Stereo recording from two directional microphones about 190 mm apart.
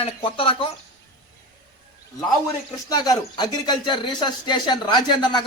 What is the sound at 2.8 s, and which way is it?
Speech, 20° left (ahead or behind).